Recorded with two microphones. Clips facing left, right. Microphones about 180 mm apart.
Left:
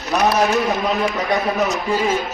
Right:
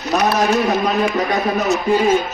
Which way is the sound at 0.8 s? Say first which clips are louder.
Right 3 dB; centre (ahead or behind).